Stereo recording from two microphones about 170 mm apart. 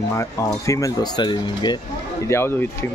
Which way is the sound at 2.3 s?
15° left (ahead or behind).